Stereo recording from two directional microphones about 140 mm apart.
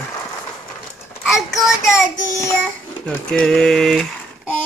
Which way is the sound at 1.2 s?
5° right (ahead or behind).